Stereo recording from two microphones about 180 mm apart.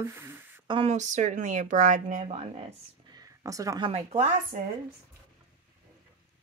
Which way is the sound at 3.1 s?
20° right (ahead or behind).